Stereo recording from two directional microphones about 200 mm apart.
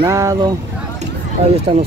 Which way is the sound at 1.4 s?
30° right (ahead or behind).